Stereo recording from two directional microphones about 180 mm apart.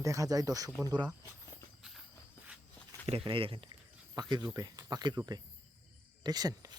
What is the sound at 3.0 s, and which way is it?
Speech, 30° right (ahead or behind).